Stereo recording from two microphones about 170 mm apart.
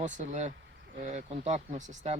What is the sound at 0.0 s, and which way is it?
Speech, 45° right (ahead or behind).